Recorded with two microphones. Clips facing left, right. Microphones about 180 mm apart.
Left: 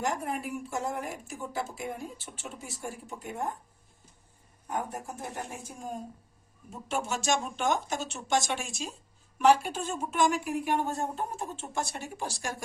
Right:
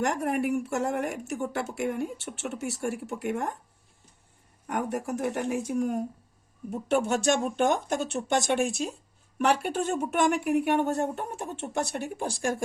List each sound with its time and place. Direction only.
0.0 s speech: 70° right (ahead or behind)
4.6 s speech: 75° right (ahead or behind)
6.7 s speech: 60° right (ahead or behind)